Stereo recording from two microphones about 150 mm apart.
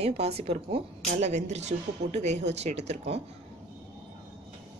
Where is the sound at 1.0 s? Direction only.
50° right (ahead or behind).